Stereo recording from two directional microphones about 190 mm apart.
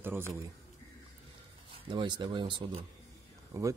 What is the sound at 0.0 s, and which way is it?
Speech, 10° right (ahead or behind).